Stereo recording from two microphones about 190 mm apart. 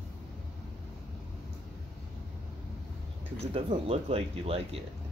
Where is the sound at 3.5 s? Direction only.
30° right (ahead or behind).